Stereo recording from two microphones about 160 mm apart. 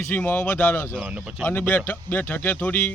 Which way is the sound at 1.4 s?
10° left (ahead or behind).